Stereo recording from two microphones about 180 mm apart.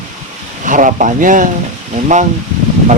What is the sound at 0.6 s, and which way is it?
Speech, 45° right (ahead or behind).